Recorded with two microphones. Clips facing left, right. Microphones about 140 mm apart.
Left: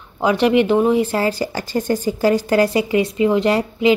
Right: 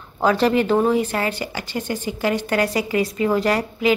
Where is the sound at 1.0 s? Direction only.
30° left (ahead or behind).